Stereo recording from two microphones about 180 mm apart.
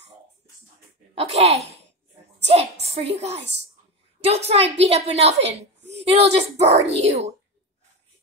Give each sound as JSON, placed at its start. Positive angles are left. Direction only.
{"t": 1.1, "sound": "a woman's voice", "side_deg": -35}